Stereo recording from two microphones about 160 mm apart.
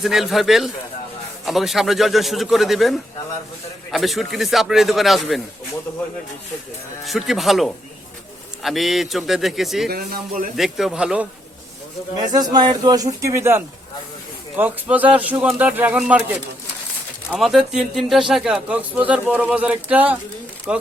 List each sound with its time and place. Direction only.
0.0 s a man's voice: centre (ahead or behind)
7.0 s a man's voice: centre (ahead or behind)
9.9 s speech: 65° right (ahead or behind)
10.6 s a man's voice: centre (ahead or behind)
12.2 s a man's voice: 25° right (ahead or behind); by 16.2 s 10° right (ahead or behind)
17.3 s a man's voice: centre (ahead or behind)